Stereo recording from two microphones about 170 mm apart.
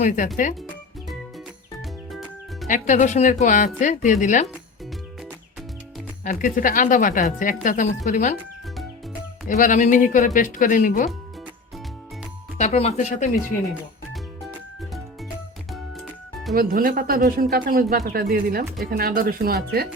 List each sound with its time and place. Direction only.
2.6 s a woman's voice: 45° left (ahead or behind)
6.2 s a woman's voice: 50° left (ahead or behind)
9.5 s a woman's voice: 50° left (ahead or behind)
12.5 s speech: 40° left (ahead or behind)
16.6 s speech: 55° right (ahead or behind)